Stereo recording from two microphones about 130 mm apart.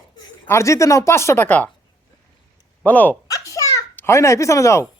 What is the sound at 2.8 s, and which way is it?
Speech, 10° left (ahead or behind).